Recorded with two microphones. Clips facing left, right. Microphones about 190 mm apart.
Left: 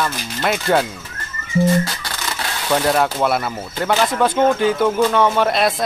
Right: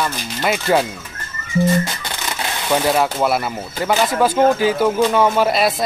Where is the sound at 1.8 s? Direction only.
20° right (ahead or behind).